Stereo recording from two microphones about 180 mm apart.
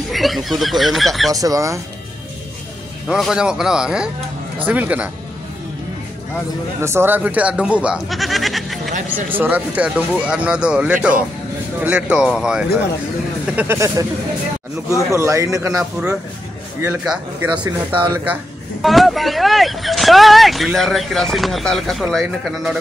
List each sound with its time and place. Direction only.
0.1 s speech: centre (ahead or behind)
1.3 s speech: 20° right (ahead or behind)
3.1 s speech: 5° right (ahead or behind)
6.8 s speech: 15° right (ahead or behind)
13.6 s speech: 15° right (ahead or behind)
15.0 s speech: 15° right (ahead or behind)
16.8 s speech: 5° right (ahead or behind)